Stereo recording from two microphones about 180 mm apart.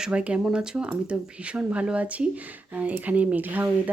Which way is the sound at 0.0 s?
5° right (ahead or behind).